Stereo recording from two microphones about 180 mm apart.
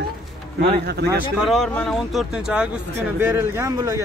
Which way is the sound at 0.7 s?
60° right (ahead or behind).